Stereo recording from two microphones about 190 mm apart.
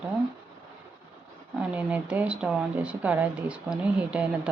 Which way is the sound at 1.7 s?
10° right (ahead or behind).